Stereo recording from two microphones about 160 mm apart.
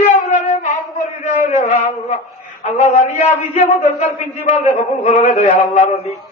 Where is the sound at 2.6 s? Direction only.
40° left (ahead or behind).